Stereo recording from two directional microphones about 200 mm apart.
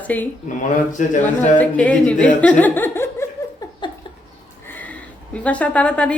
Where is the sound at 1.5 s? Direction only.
5° left (ahead or behind).